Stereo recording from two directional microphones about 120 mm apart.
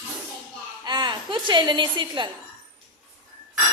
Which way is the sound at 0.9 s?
40° right (ahead or behind).